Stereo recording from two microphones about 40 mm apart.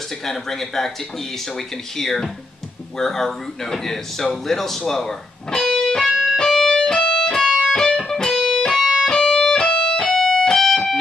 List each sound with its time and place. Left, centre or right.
0.2 s speech: centre
2.0 s speech: centre
6.3 s music: centre
10.0 s music: centre